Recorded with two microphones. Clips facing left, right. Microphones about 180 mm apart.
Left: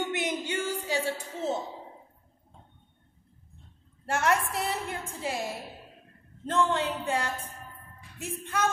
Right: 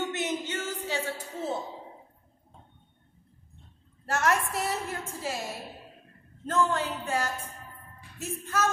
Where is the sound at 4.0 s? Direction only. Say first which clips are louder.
Even; 20° left (ahead or behind).